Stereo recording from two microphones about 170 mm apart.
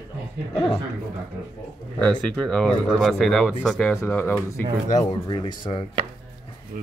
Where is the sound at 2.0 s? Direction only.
5° left (ahead or behind).